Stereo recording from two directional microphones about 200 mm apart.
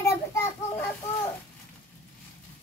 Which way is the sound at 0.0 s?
15° left (ahead or behind).